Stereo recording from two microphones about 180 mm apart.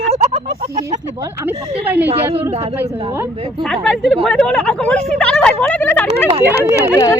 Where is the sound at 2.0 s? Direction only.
35° right (ahead or behind).